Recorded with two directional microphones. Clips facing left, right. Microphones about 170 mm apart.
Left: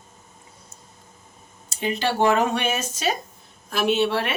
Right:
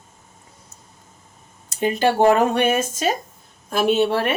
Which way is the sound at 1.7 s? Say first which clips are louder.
Right 6 dB; 50° right (ahead or behind).